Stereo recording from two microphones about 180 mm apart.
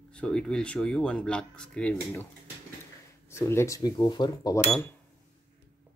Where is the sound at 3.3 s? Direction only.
15° left (ahead or behind).